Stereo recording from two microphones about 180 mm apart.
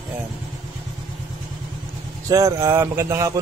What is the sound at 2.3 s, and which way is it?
Speech, 15° right (ahead or behind).